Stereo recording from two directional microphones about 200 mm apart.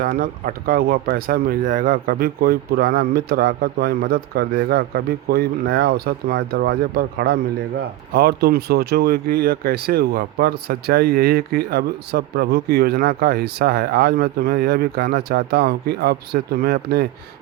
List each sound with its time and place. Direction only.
0.0 s speech: 45° right (ahead or behind)